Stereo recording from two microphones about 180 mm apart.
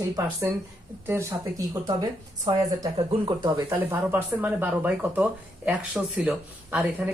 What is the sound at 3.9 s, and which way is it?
Speech, 10° right (ahead or behind).